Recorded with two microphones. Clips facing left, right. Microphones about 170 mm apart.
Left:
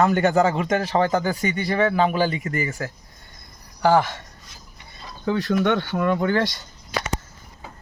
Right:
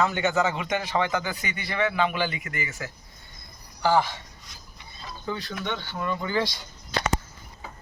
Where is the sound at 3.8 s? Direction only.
50° left (ahead or behind).